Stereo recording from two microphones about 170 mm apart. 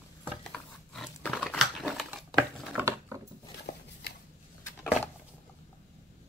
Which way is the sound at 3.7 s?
65° left (ahead or behind).